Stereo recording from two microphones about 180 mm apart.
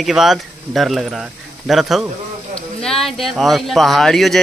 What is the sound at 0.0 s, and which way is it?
Speech, centre (ahead or behind).